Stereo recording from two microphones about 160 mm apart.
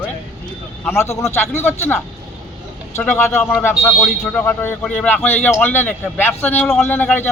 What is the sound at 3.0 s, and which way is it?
A man's voice, 5° left (ahead or behind).